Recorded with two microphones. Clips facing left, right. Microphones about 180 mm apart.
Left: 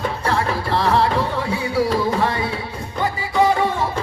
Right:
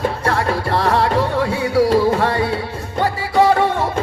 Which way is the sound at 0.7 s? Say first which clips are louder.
Even; 60° right (ahead or behind).